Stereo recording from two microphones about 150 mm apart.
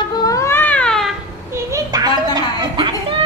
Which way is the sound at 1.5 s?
20° right (ahead or behind).